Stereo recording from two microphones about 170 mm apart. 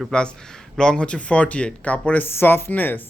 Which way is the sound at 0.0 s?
5° left (ahead or behind).